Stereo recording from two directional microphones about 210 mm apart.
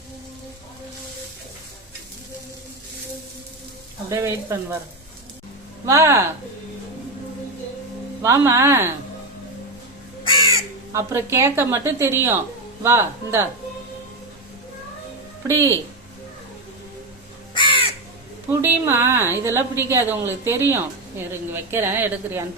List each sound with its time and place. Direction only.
4.1 s a woman's voice: 15° right (ahead or behind)
5.8 s a woman's voice: 15° right (ahead or behind)
8.2 s a woman's voice: 15° right (ahead or behind)
10.9 s a woman's voice: 15° right (ahead or behind)
15.4 s a woman's voice: 15° right (ahead or behind)
17.5 s crow: 25° left (ahead or behind)
18.6 s a woman's voice: 10° right (ahead or behind)